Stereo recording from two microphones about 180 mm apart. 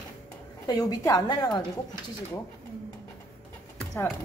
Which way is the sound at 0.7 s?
20° left (ahead or behind).